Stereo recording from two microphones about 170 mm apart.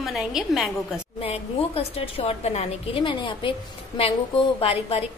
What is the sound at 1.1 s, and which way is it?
A woman's voice, 35° left (ahead or behind).